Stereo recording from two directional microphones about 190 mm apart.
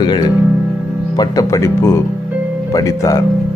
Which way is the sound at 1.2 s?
15° left (ahead or behind).